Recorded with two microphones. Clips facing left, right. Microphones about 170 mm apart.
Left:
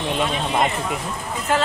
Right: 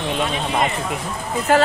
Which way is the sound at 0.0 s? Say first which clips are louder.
Even; centre (ahead or behind).